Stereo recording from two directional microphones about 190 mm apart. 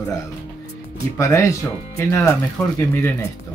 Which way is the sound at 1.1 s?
15° left (ahead or behind).